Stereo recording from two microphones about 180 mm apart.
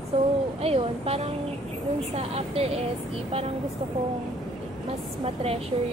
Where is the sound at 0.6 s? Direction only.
35° right (ahead or behind).